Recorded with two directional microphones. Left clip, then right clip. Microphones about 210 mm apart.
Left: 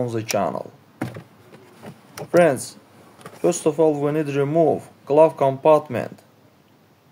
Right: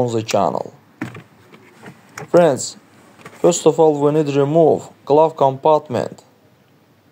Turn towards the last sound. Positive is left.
turn(degrees=-25)  # may be behind; listen again after turning